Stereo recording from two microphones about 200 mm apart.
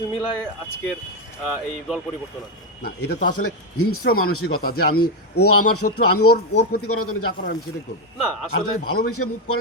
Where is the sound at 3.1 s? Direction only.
45° left (ahead or behind).